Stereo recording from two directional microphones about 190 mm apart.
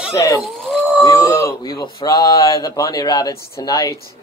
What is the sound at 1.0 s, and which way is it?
Speech, 15° left (ahead or behind).